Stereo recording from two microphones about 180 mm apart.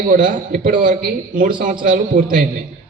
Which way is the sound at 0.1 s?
50° right (ahead or behind).